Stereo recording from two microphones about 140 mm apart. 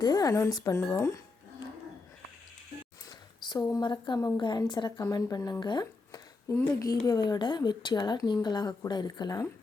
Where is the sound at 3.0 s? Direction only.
30° left (ahead or behind).